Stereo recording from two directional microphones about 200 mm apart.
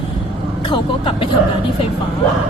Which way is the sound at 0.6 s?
25° left (ahead or behind).